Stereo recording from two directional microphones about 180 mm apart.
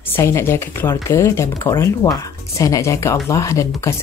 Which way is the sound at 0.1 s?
15° left (ahead or behind).